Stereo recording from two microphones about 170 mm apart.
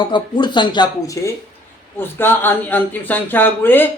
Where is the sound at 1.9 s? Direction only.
10° left (ahead or behind).